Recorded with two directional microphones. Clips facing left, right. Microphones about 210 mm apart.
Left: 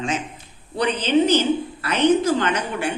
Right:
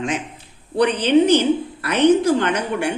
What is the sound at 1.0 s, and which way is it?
Speech, 60° right (ahead or behind).